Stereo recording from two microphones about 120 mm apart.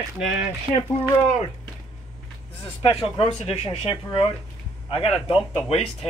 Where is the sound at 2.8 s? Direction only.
50° left (ahead or behind).